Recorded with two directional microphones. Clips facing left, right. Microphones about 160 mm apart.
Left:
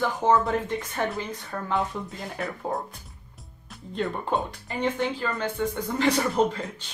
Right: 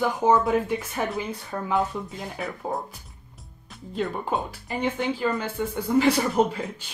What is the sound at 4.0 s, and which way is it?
Speech, centre (ahead or behind).